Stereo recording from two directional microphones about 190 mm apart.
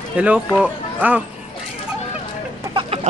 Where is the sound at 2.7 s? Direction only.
25° right (ahead or behind).